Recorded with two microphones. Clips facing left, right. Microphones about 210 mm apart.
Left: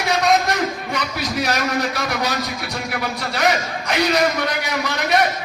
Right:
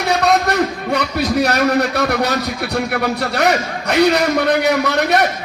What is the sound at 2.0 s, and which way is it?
Speech, 60° right (ahead or behind).